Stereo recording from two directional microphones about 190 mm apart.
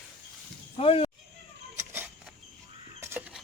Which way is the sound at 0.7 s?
30° left (ahead or behind).